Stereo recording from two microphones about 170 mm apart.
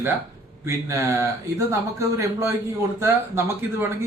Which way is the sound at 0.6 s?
15° right (ahead or behind).